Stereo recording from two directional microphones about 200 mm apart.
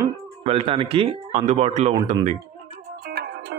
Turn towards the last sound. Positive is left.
turn(degrees=-55)  # may be behind; listen again after turning